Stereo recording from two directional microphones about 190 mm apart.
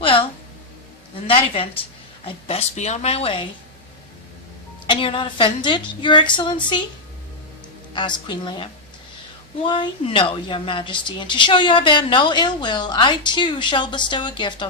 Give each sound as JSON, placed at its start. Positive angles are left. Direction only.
{"t": 0.0, "sound": "a sound", "side_deg": 25}
{"t": 2.2, "sound": "a woman's voice", "side_deg": 30}
{"t": 4.9, "sound": "a woman's voice", "side_deg": 25}
{"t": 7.9, "sound": "a woman's voice", "side_deg": 25}